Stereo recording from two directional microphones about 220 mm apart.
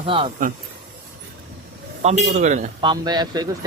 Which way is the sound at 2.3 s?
35° right (ahead or behind).